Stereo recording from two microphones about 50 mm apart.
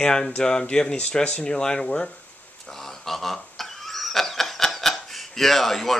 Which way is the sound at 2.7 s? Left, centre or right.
Centre.